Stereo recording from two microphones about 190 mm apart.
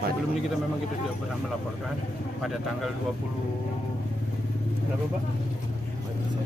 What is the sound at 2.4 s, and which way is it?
Speech, centre (ahead or behind).